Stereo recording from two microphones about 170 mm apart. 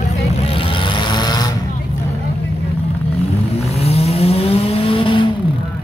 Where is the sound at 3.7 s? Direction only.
35° left (ahead or behind).